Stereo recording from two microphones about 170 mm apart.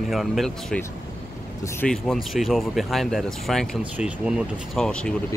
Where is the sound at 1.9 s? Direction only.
Centre (ahead or behind).